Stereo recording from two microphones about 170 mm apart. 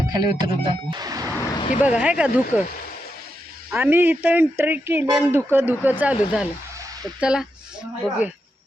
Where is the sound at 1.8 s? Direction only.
5° right (ahead or behind).